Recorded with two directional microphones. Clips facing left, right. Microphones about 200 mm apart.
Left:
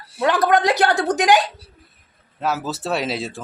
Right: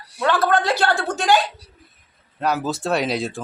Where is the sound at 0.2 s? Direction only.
20° left (ahead or behind).